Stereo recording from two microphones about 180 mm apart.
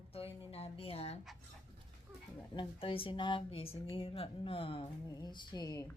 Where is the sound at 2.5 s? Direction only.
30° left (ahead or behind).